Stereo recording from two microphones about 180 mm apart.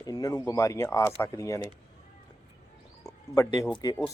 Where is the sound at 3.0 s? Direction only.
20° left (ahead or behind).